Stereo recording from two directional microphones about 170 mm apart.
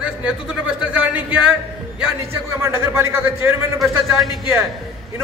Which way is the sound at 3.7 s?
Centre (ahead or behind).